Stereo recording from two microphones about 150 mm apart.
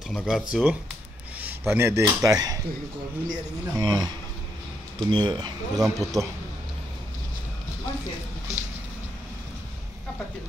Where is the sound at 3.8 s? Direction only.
25° right (ahead or behind).